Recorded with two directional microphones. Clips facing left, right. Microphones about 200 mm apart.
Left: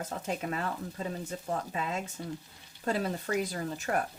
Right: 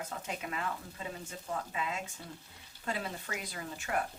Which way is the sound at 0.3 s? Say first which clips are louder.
Left 5 dB; 40° left (ahead or behind).